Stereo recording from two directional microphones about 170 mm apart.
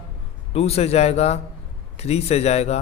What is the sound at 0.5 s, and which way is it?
A man's voice, 35° left (ahead or behind).